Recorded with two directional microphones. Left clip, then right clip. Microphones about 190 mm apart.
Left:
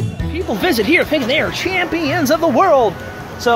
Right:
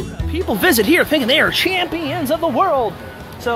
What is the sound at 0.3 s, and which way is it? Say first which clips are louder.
Speech: right 2 dB; 35° right (ahead or behind).